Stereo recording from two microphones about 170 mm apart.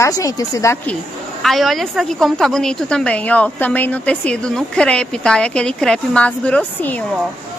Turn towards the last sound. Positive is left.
turn(degrees=10)  # may be behind; listen again after turning